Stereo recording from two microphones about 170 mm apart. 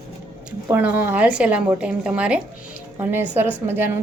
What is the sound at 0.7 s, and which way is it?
Speech, 10° right (ahead or behind).